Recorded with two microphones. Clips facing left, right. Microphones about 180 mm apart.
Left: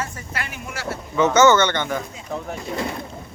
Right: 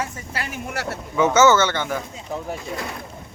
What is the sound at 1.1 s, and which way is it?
Speech, 10° right (ahead or behind).